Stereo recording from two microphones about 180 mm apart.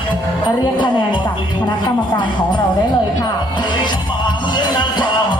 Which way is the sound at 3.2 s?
25° left (ahead or behind).